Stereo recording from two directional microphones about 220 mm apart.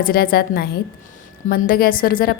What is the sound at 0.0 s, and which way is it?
A woman's voice, 40° left (ahead or behind).